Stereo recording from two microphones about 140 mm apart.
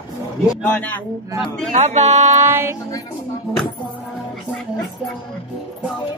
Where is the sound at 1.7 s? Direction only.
55° right (ahead or behind).